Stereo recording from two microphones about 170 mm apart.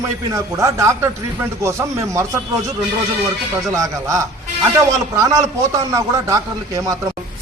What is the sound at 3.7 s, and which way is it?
A man's voice, 20° right (ahead or behind).